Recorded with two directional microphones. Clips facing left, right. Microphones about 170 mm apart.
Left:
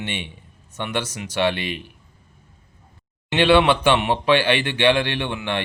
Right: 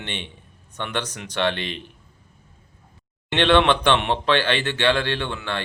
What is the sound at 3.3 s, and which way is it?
Speech, 5° left (ahead or behind).